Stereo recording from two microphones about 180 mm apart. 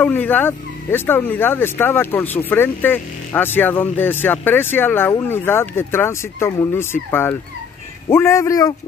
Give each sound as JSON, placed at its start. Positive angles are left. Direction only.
{"t": 0.0, "sound": "speech", "side_deg": 10}